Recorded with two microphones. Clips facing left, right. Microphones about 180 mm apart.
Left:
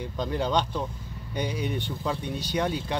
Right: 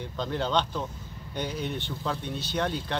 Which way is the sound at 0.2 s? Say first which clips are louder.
Left 1 dB; 10° left (ahead or behind).